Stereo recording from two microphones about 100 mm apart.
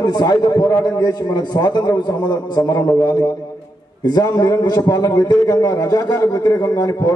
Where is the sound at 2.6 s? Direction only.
35° left (ahead or behind).